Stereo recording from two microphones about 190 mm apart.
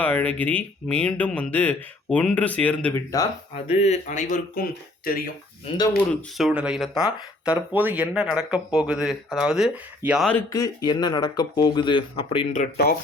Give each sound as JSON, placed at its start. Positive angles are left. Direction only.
{"t": 0.0, "sound": "speech", "side_deg": 5}
{"t": 3.7, "sound": "speech", "side_deg": 35}
{"t": 5.0, "sound": "speech", "side_deg": 50}
{"t": 5.7, "sound": "speech", "side_deg": 30}
{"t": 6.3, "sound": "speech", "side_deg": -5}
{"t": 10.3, "sound": "speech", "side_deg": 15}
{"t": 12.7, "sound": "speech", "side_deg": 55}